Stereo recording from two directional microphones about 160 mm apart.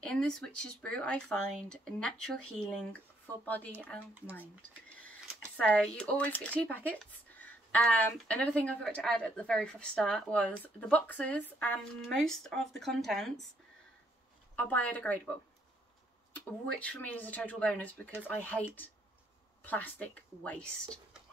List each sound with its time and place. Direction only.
0.0 s speech: 5° left (ahead or behind)
5.6 s speech: 5° left (ahead or behind)
14.5 s speech: 10° left (ahead or behind)
16.3 s speech: 10° left (ahead or behind)